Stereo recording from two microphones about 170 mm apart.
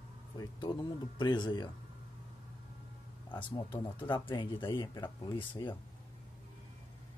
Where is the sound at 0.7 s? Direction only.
25° left (ahead or behind).